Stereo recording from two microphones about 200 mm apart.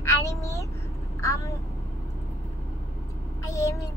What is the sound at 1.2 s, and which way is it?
Speech, 15° left (ahead or behind).